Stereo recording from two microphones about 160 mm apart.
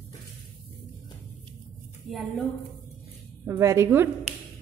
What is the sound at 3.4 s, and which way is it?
Speech, 20° right (ahead or behind).